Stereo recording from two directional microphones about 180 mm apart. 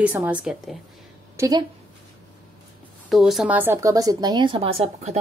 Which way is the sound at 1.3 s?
20° right (ahead or behind).